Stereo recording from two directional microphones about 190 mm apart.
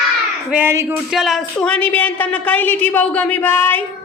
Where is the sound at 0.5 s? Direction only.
15° right (ahead or behind).